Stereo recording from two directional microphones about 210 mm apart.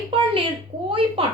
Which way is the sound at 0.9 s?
25° right (ahead or behind).